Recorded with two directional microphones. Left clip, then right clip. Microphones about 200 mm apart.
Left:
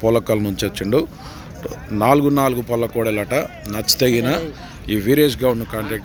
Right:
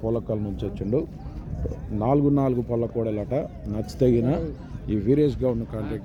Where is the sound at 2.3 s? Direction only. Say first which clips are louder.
Left 6 dB; 10° right (ahead or behind).